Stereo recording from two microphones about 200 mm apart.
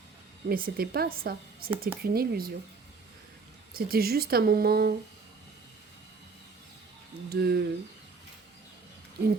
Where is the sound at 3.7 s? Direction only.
50° right (ahead or behind).